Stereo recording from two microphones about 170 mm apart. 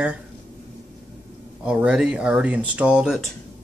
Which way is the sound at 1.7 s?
5° right (ahead or behind).